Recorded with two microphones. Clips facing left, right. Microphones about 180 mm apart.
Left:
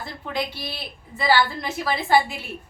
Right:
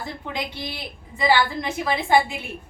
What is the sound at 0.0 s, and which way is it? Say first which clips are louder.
A woman's voice: left 2 dB; 20° right (ahead or behind).